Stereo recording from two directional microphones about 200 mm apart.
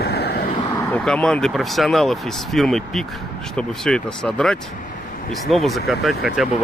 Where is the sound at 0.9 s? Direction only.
5° left (ahead or behind).